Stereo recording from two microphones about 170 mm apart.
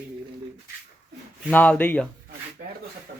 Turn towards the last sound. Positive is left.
turn(degrees=-55)  # may be behind; listen again after turning